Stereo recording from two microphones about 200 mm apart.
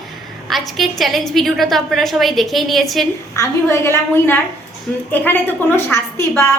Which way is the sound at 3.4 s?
15° left (ahead or behind).